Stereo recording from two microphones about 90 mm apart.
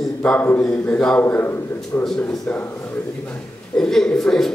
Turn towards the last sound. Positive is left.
turn(degrees=5)  # may be behind; listen again after turning